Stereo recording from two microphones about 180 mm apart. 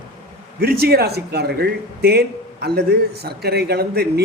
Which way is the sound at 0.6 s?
60° right (ahead or behind).